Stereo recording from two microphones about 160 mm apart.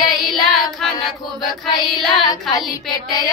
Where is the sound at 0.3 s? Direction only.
Centre (ahead or behind).